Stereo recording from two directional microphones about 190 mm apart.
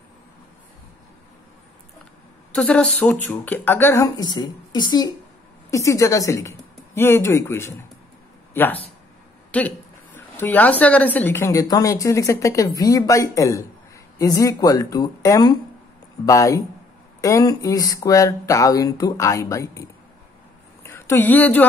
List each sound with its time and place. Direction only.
2.5 s a woman's voice: 5° left (ahead or behind)